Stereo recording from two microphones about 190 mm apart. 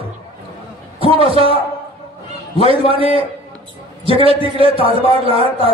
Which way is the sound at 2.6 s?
30° right (ahead or behind).